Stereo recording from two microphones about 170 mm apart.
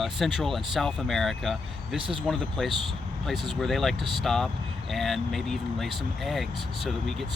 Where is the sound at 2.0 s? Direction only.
30° right (ahead or behind).